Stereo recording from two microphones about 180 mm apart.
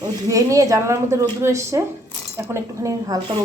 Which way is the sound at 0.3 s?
20° right (ahead or behind).